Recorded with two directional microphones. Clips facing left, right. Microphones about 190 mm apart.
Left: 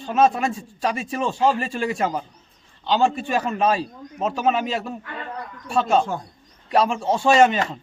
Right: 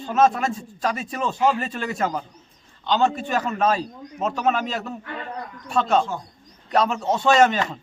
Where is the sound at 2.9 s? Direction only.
10° left (ahead or behind).